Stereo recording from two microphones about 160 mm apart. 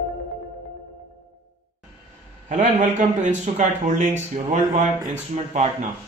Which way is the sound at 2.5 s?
50° right (ahead or behind).